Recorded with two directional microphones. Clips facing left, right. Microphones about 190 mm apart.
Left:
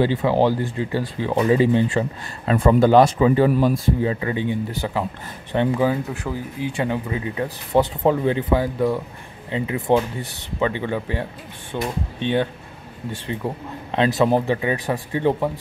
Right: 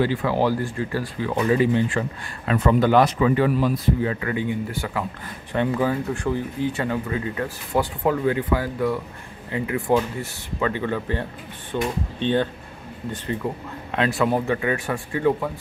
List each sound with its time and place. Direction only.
0.0 s speech: 25° left (ahead or behind); by 6.7 s 5° left (ahead or behind)
6.8 s speech: 15° left (ahead or behind)
13.9 s speech: 25° left (ahead or behind)